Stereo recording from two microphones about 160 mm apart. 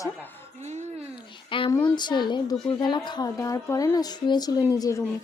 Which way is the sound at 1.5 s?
30° left (ahead or behind).